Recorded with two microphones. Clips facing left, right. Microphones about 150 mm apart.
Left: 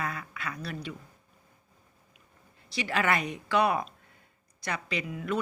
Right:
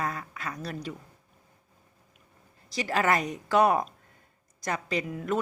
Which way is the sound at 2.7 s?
40° right (ahead or behind).